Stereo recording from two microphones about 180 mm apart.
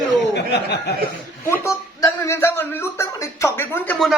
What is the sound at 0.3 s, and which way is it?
Speech, 65° left (ahead or behind).